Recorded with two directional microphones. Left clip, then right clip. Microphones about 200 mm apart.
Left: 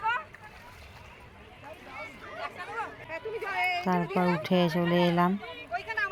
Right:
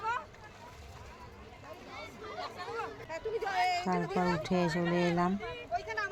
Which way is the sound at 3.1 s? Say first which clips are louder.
Right 2 dB; 40° left (ahead or behind).